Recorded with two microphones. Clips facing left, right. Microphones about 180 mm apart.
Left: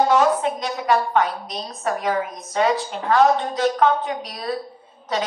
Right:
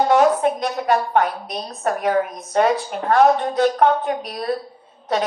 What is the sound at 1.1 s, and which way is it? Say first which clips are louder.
A woman's voice: right 2 dB; 60° right (ahead or behind).